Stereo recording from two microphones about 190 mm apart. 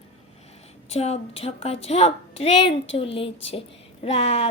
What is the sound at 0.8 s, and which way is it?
A woman's voice, 35° left (ahead or behind).